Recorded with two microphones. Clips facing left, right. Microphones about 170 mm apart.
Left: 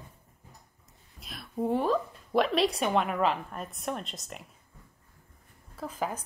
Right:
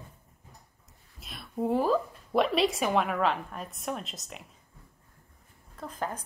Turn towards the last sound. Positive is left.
turn(degrees=5)  # may be behind; listen again after turning